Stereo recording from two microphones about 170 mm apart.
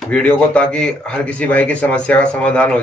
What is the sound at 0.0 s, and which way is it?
Speech, 5° left (ahead or behind).